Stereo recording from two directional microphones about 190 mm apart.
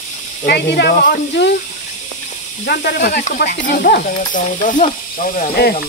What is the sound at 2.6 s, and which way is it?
Speech, 55° left (ahead or behind).